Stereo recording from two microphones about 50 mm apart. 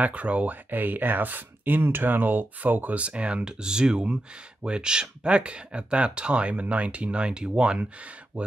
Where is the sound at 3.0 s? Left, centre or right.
Right.